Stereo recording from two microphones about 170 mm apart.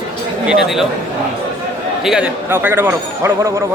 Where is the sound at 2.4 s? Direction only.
15° right (ahead or behind).